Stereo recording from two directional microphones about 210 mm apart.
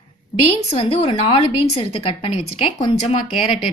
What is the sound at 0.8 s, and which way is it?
A woman's voice, 25° left (ahead or behind).